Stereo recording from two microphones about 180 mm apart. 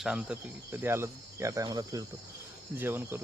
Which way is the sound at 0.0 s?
5° right (ahead or behind).